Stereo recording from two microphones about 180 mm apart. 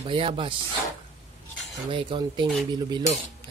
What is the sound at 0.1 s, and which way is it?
Speech, 30° right (ahead or behind).